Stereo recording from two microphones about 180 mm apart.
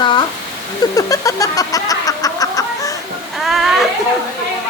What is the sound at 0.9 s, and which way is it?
Chicken, 20° left (ahead or behind).